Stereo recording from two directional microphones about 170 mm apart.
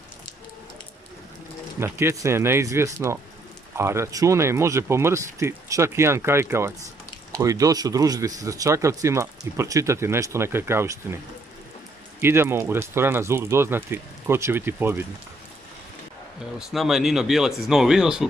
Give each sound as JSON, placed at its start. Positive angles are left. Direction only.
{"t": 1.8, "sound": "speech", "side_deg": -15}
{"t": 12.2, "sound": "speech", "side_deg": -15}
{"t": 16.5, "sound": "speech", "side_deg": 0}